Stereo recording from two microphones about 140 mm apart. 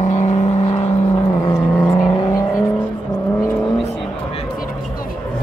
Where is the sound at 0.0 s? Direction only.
55° left (ahead or behind).